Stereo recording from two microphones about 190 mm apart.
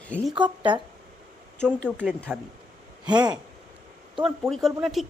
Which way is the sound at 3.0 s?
20° right (ahead or behind).